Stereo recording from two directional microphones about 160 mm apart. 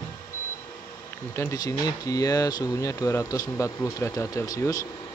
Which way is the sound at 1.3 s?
20° left (ahead or behind).